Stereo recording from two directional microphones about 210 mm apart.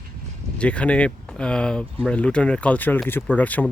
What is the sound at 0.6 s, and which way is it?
Speech, 5° left (ahead or behind).